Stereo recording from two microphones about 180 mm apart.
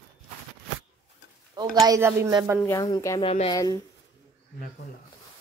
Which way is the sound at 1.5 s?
20° right (ahead or behind).